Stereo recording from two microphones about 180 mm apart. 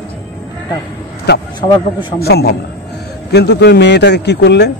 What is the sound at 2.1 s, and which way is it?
A man's voice, 65° left (ahead or behind).